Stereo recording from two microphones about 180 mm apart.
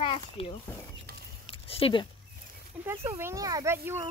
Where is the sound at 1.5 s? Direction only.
30° left (ahead or behind).